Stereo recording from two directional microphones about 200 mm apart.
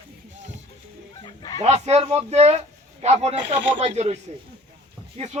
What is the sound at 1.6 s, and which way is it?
A man's voice, 30° right (ahead or behind).